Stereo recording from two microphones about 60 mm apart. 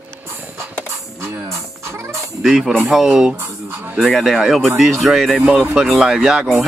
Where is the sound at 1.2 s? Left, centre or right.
Right.